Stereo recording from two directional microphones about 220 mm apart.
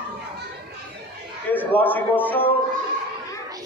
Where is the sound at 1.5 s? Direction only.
10° left (ahead or behind).